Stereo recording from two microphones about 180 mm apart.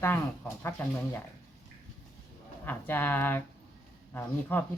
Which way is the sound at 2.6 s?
10° left (ahead or behind).